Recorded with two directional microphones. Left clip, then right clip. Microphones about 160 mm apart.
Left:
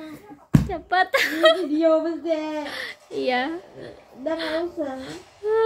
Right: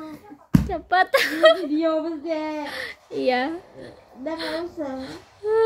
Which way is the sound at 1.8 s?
10° left (ahead or behind).